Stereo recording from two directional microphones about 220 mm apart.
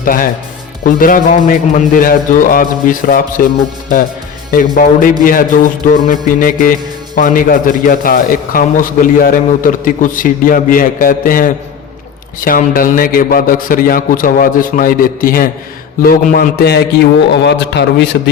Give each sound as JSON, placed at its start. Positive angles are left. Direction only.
{"t": 0.0, "sound": "a man's voice", "side_deg": 40}
{"t": 4.7, "sound": "a man's voice", "side_deg": 35}